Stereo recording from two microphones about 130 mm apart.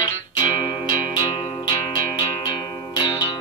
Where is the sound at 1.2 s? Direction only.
30° left (ahead or behind).